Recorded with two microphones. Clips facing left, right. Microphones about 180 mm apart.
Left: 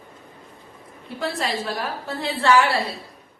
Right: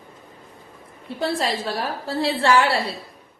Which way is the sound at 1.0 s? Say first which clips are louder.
Right 3 dB; 30° right (ahead or behind).